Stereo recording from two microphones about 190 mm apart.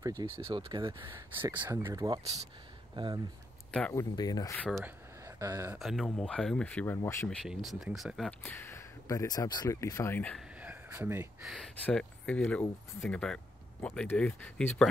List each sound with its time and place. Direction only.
0.2 s speech: 25° right (ahead or behind)
1.4 s speech: 10° right (ahead or behind)
2.9 s speech: 25° right (ahead or behind)
3.9 s speech: 20° left (ahead or behind)
4.6 s speech: centre (ahead or behind)
4.8 s a sound: 15° right (ahead or behind)
5.8 s speech: centre (ahead or behind)
7.2 s speech: centre (ahead or behind)
8.4 s speech: 10° left (ahead or behind)
10.6 s a sound: 10° right (ahead or behind)
11.4 s speech: 5° left (ahead or behind)